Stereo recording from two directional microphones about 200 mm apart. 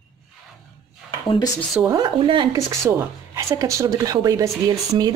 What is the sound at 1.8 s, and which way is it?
A woman's voice, 20° right (ahead or behind).